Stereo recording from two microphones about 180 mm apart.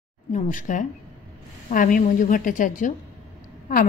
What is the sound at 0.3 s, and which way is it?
A woman's voice, 45° left (ahead or behind).